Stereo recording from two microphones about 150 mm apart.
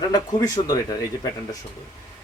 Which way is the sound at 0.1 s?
25° left (ahead or behind).